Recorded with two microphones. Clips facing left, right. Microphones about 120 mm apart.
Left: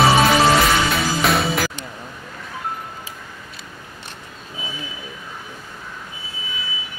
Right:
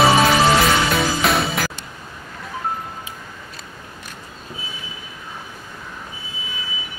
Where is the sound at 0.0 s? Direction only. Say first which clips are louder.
Even; centre (ahead or behind).